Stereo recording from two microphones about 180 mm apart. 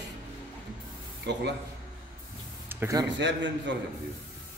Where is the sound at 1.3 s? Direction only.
70° right (ahead or behind).